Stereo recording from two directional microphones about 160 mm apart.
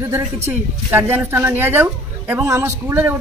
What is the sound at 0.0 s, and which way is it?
Speech, 15° right (ahead or behind).